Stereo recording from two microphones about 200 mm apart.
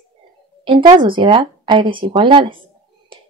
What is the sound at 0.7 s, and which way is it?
Speech, 25° right (ahead or behind).